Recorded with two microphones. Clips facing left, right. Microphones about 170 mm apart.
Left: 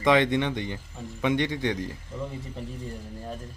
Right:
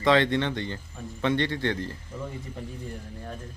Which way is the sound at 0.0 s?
15° left (ahead or behind).